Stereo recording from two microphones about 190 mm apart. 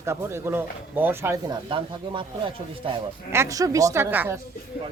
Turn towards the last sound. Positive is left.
turn(degrees=-10)  # may be behind; listen again after turning